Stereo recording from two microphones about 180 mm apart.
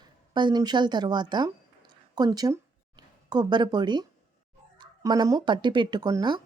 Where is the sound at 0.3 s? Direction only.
25° right (ahead or behind).